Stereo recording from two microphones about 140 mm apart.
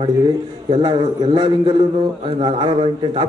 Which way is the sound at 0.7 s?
30° right (ahead or behind).